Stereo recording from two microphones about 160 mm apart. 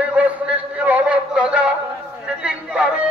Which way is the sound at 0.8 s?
5° right (ahead or behind).